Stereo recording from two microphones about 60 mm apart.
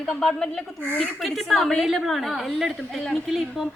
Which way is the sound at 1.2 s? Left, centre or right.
Centre.